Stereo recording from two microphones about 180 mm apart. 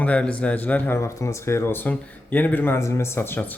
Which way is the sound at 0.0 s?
5° left (ahead or behind).